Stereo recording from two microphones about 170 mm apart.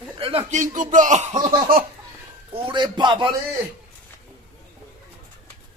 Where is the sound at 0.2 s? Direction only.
35° right (ahead or behind).